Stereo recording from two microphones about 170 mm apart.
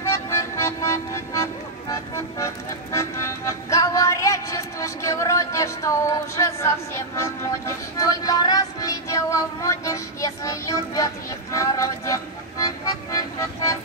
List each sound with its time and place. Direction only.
0.1 s music: 15° left (ahead or behind)